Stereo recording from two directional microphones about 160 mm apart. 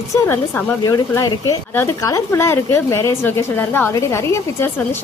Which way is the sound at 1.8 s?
20° left (ahead or behind).